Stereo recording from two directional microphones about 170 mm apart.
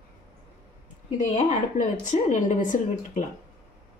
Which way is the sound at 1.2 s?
45° left (ahead or behind).